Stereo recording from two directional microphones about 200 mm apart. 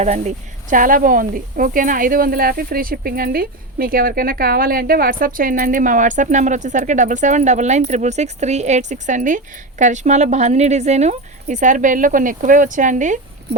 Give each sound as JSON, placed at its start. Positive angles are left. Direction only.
{"t": 0.0, "sound": "speech", "side_deg": -35}